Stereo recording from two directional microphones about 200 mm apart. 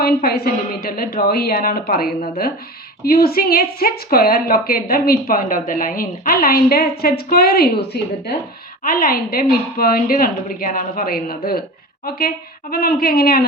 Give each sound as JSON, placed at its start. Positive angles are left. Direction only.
{"t": 0.0, "sound": "a woman's voice", "side_deg": 50}